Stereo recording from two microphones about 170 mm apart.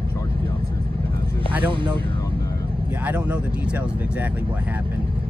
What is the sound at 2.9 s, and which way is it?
Speech, 10° right (ahead or behind).